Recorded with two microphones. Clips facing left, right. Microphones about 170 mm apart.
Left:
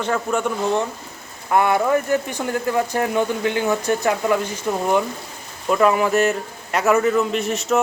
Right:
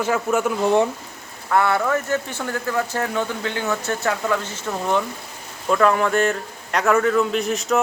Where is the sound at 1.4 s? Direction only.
15° left (ahead or behind).